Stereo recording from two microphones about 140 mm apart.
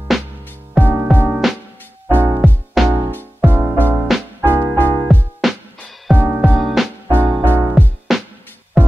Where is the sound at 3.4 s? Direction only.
15° right (ahead or behind).